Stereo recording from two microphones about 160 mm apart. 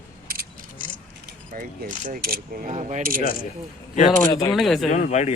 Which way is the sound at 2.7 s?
45° right (ahead or behind).